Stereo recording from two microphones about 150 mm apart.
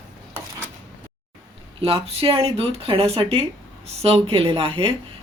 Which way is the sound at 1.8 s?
40° right (ahead or behind).